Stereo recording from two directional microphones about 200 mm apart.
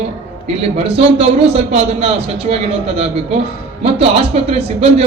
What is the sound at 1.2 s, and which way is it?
A man's voice, 30° right (ahead or behind).